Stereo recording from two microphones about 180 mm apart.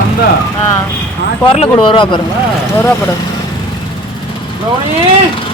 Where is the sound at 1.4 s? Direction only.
30° left (ahead or behind).